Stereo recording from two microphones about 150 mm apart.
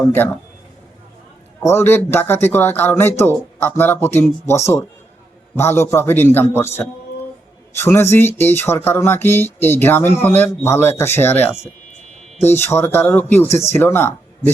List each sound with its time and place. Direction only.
0.0 s speech: 15° left (ahead or behind)
1.6 s speech: 15° left (ahead or behind)
7.8 s speech: 15° left (ahead or behind)